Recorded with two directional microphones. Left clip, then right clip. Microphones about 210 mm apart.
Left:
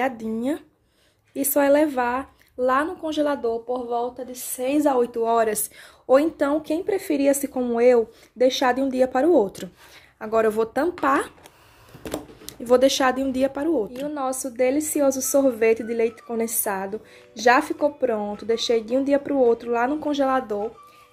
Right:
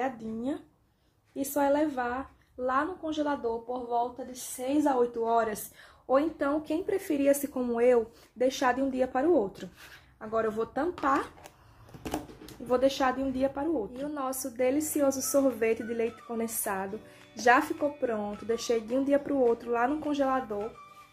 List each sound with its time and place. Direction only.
0.0 s a woman's voice: 50° left (ahead or behind)
12.4 s a woman's voice: 45° left (ahead or behind)
14.1 s a woman's voice: 25° left (ahead or behind)